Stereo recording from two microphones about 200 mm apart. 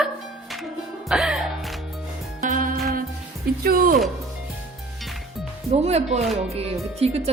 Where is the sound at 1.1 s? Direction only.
Centre (ahead or behind).